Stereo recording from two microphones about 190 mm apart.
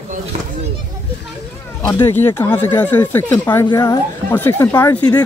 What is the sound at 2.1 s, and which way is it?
Speech, 10° left (ahead or behind).